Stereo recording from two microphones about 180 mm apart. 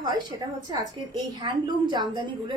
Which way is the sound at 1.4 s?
25° right (ahead or behind).